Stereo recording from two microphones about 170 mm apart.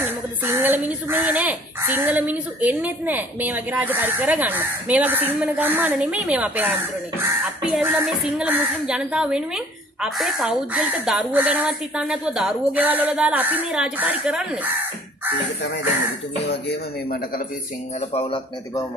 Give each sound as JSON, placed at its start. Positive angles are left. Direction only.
{"t": 0.0, "sound": "speech", "side_deg": -10}
{"t": 16.4, "sound": "music", "side_deg": 75}
{"t": 18.1, "sound": "speech", "side_deg": 35}